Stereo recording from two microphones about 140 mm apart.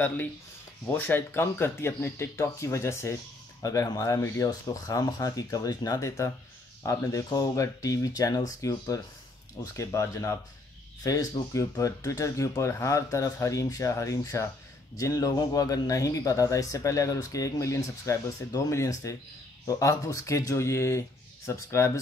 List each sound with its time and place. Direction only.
0.8 s speech: 15° left (ahead or behind)